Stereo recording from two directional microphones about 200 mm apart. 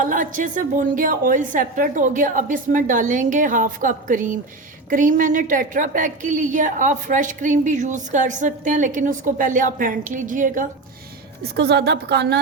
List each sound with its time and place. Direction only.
0.0 s a woman's voice: 40° right (ahead or behind)
11.5 s a woman's voice: 55° right (ahead or behind)